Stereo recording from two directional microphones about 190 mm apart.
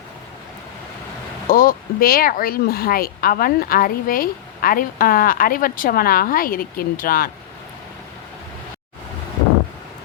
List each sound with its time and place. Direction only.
1.5 s speech: 50° left (ahead or behind)